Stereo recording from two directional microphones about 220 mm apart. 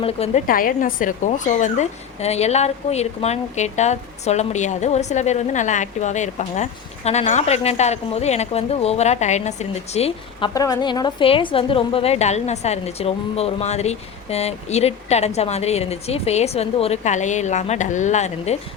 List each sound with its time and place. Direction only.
0.0 s speech: 25° left (ahead or behind)
10.5 s a woman's voice: 15° left (ahead or behind); by 18.5 s 30° left (ahead or behind)